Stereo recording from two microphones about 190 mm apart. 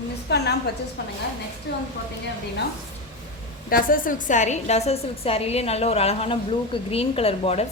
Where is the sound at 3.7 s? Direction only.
50° left (ahead or behind).